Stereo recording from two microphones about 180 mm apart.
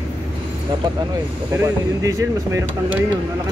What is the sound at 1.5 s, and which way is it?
Speech, 15° right (ahead or behind).